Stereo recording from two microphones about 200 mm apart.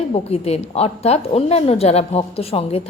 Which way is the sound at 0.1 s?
30° left (ahead or behind).